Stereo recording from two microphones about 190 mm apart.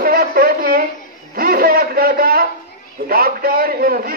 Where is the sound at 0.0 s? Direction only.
50° right (ahead or behind).